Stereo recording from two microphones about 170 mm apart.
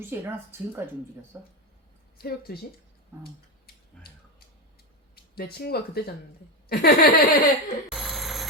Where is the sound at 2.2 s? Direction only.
65° left (ahead or behind).